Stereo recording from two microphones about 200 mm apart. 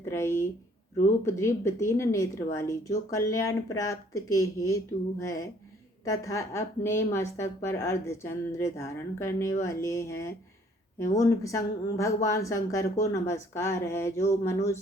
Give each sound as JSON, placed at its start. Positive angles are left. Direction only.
{"t": 0.0, "sound": "a woman's voice", "side_deg": 15}